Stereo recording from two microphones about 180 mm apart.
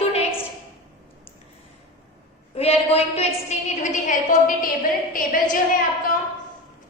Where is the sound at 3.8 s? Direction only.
45° left (ahead or behind).